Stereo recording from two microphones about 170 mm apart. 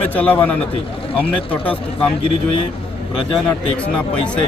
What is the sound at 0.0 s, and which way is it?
Speech, 10° left (ahead or behind).